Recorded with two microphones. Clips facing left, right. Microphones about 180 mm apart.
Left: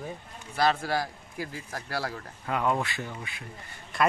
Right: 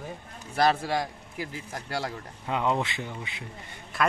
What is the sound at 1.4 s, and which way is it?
Speech, 20° right (ahead or behind).